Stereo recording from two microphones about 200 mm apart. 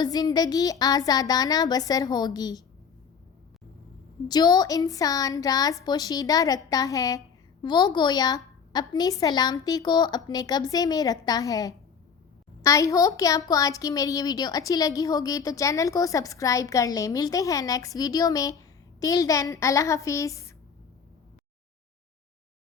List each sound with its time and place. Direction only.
0.0 s a woman's voice: 20° left (ahead or behind)
4.3 s a woman's voice: 20° left (ahead or behind)